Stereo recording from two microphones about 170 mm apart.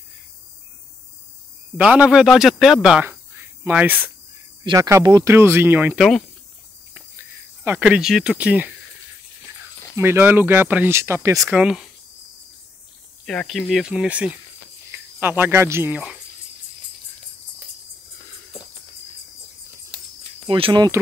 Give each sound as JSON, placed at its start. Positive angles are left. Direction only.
{"t": 1.8, "sound": "speech", "side_deg": -5}
{"t": 7.6, "sound": "speech", "side_deg": -10}
{"t": 9.9, "sound": "speech", "side_deg": -15}
{"t": 11.6, "sound": "speech", "side_deg": 0}
{"t": 13.2, "sound": "speech", "side_deg": 0}
{"t": 20.4, "sound": "speech", "side_deg": -30}